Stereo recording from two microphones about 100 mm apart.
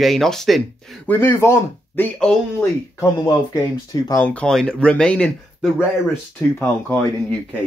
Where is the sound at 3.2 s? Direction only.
40° left (ahead or behind).